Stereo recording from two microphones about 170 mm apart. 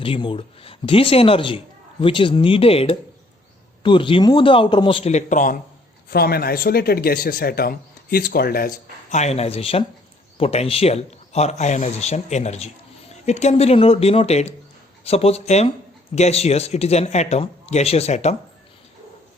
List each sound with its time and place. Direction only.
0.0 s a man's voice: 30° left (ahead or behind); by 5.5 s 50° left (ahead or behind)
6.1 s speech: 65° left (ahead or behind)
9.0 s a man's voice: 40° left (ahead or behind)